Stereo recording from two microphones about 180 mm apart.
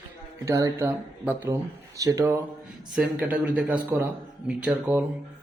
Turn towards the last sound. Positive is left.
turn(degrees=-5)  # may be behind; listen again after turning